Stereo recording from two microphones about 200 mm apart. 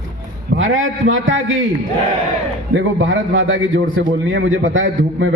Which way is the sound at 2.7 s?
75° right (ahead or behind).